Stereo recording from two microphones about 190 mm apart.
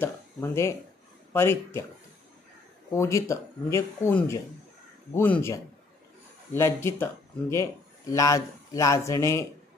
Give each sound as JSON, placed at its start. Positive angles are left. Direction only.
{"t": 0.0, "sound": "speech", "side_deg": 15}
{"t": 2.9, "sound": "speech", "side_deg": 15}